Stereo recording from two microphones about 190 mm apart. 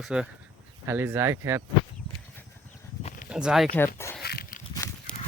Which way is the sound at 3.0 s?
40° left (ahead or behind).